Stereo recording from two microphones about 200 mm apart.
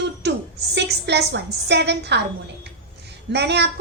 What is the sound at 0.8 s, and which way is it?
A woman's voice, 55° right (ahead or behind).